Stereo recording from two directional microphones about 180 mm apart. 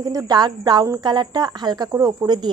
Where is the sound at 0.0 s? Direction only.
20° right (ahead or behind).